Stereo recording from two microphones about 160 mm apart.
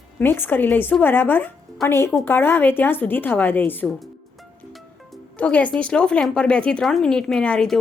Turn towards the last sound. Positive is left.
turn(degrees=5)  # may be behind; listen again after turning